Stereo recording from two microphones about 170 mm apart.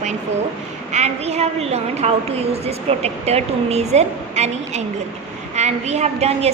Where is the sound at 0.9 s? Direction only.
40° right (ahead or behind).